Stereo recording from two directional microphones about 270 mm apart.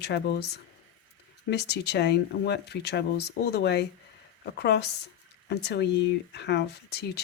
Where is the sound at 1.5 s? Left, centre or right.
Left.